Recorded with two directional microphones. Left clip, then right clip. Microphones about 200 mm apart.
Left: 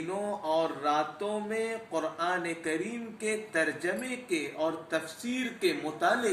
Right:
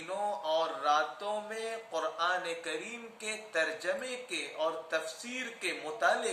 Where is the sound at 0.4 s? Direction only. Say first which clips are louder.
Left 2 dB; centre (ahead or behind).